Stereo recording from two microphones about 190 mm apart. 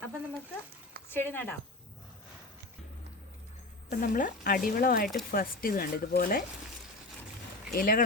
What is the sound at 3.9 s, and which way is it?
Speech, 45° left (ahead or behind).